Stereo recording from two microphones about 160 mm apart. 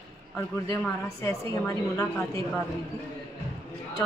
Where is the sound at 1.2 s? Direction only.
20° left (ahead or behind).